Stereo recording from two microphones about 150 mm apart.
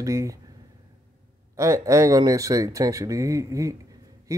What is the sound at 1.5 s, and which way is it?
Speech, 20° right (ahead or behind).